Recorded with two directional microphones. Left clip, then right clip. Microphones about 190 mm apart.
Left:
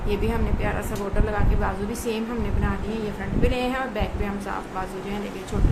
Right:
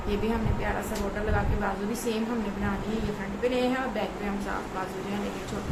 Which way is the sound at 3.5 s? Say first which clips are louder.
Left 2 dB; 55° left (ahead or behind).